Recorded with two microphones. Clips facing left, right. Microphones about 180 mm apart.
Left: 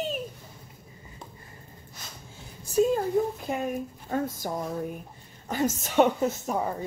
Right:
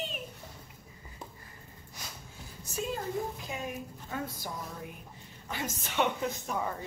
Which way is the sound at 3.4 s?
50° left (ahead or behind).